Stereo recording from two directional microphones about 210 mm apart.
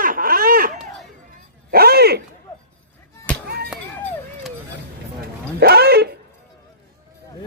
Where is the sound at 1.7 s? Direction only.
50° right (ahead or behind).